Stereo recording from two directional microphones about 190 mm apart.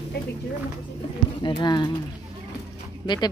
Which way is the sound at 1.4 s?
25° left (ahead or behind).